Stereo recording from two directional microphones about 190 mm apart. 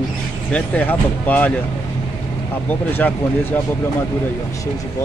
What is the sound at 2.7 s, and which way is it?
Speech, 10° left (ahead or behind).